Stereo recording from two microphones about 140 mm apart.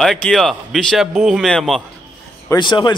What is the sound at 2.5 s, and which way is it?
Speech, 35° left (ahead or behind).